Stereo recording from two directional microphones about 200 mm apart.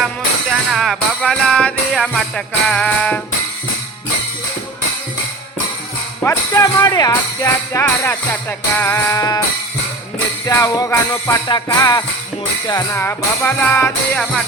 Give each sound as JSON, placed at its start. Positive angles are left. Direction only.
{"t": 0.5, "sound": "music", "side_deg": 0}
{"t": 6.2, "sound": "speech", "side_deg": 15}
{"t": 10.4, "sound": "speech", "side_deg": 15}